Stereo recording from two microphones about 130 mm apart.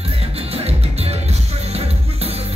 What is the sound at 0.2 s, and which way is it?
Music, 50° right (ahead or behind).